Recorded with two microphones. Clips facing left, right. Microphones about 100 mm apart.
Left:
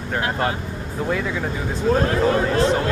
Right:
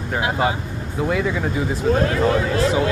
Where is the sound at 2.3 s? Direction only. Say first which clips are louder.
Left 1 dB; 35° left (ahead or behind).